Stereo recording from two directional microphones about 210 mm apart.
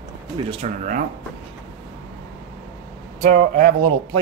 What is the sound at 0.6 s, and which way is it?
Speech, 35° right (ahead or behind).